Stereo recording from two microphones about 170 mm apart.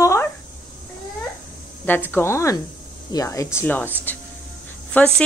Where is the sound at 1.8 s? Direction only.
10° left (ahead or behind).